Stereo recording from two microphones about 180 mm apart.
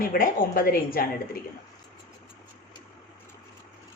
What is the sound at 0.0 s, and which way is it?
A woman's voice, 50° left (ahead or behind).